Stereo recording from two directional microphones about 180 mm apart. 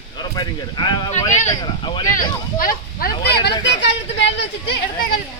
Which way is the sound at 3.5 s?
80° left.